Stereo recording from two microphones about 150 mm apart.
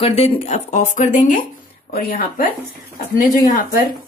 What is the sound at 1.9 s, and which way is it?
Speech, 75° left (ahead or behind).